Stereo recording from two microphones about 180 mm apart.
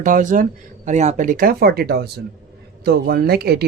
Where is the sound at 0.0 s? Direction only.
45° right (ahead or behind).